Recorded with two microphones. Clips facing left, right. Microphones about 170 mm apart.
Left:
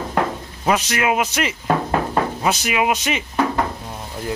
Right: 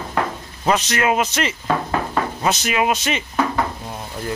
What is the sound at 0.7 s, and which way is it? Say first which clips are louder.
Speech: even; 10° left (ahead or behind).